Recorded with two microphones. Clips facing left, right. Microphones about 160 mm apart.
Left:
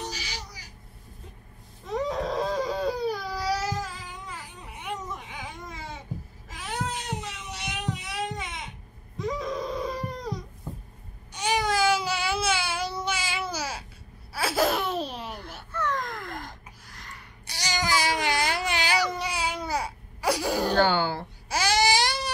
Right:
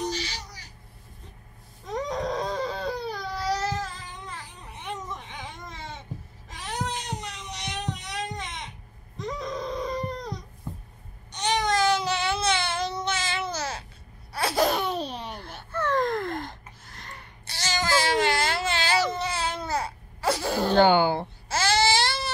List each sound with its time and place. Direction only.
0.0 s a sound: 10° left (ahead or behind)
1.9 s baby cry: 5° left (ahead or behind)
6.5 s cat: 5° left (ahead or behind)
9.2 s wail: 5° left (ahead or behind)
11.3 s baby cry: 10° left (ahead or behind)
14.3 s laughter: 5° left (ahead or behind)
15.3 s a sound: 30° right (ahead or behind)
17.5 s baby cry: 15° left (ahead or behind)
20.7 s a sound: 20° right (ahead or behind)
21.5 s baby cry: 15° left (ahead or behind)